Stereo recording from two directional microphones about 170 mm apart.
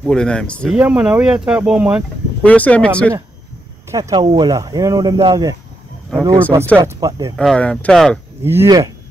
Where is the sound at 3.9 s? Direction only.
20° right (ahead or behind).